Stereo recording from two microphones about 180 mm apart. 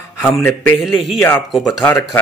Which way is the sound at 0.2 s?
10° left (ahead or behind).